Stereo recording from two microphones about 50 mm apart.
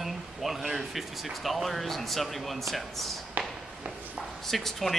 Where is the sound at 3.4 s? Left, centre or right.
Right.